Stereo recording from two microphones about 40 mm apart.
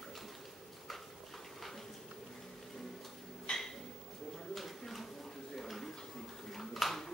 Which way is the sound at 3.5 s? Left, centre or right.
Left.